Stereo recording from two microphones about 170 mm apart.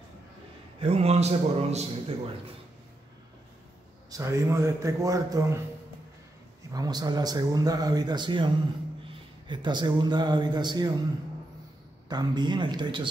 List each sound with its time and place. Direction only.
0.7 s a man's voice: 35° right (ahead or behind)
4.1 s a man's voice: 15° right (ahead or behind)
6.7 s a man's voice: 20° right (ahead or behind)
12.1 s a man's voice: 25° right (ahead or behind)